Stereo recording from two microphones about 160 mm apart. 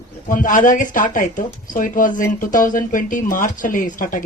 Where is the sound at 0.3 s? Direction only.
55° left (ahead or behind).